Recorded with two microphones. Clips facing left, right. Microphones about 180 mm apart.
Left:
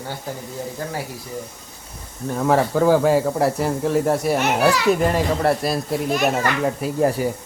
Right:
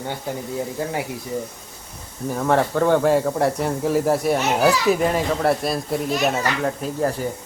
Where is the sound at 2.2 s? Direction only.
Centre (ahead or behind).